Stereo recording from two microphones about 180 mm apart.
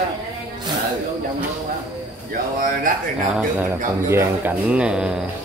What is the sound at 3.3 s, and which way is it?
Speech, 10° right (ahead or behind).